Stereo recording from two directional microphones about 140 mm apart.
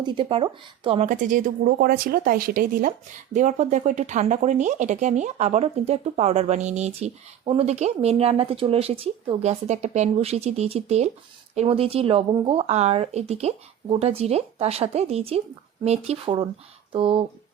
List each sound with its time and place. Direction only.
0.0 s speech: 35° right (ahead or behind)
0.9 s speech: 60° right (ahead or behind); by 2.9 s 90° right
3.3 s speech: 60° right (ahead or behind); by 17.2 s 40° right (ahead or behind)